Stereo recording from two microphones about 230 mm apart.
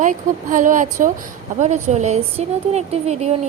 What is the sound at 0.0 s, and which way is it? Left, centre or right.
A woman's voice, right.